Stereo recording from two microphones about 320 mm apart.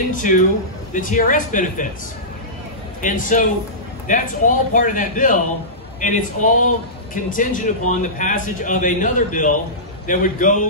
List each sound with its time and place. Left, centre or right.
0.1 s a man's voice: left
3.0 s a man's voice: left